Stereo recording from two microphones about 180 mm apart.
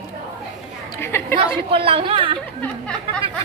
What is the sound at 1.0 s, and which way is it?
Speech, 15° left (ahead or behind).